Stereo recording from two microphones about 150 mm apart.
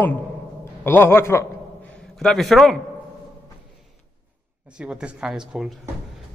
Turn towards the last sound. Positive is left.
turn(degrees=-5)  # may be behind; listen again after turning